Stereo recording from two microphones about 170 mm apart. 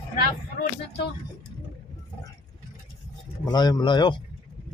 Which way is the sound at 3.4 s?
25° left (ahead or behind).